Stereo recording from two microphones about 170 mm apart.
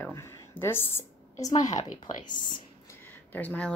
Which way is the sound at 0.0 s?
15° left (ahead or behind).